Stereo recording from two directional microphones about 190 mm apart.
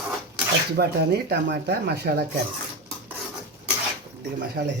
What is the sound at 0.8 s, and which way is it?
Speech, 60° right (ahead or behind).